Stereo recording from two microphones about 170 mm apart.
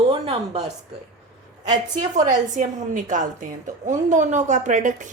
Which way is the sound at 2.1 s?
45° right (ahead or behind).